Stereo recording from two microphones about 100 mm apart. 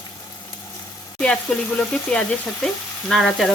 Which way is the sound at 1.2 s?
10° left (ahead or behind).